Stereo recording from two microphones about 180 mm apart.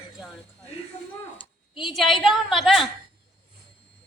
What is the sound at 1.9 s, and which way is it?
Speech, centre (ahead or behind).